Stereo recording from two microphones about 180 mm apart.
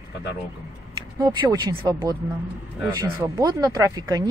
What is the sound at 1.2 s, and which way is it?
Speech, 20° right (ahead or behind).